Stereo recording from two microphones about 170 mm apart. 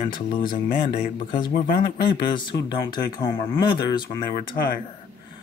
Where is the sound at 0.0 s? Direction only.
55° left (ahead or behind).